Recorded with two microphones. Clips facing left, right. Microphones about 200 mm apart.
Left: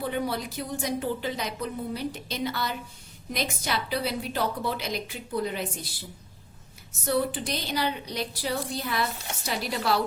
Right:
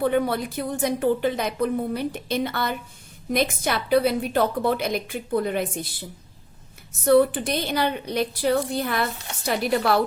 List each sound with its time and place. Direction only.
0.0 s a woman's voice: 55° right (ahead or behind)
7.0 s a woman's voice: 55° right (ahead or behind)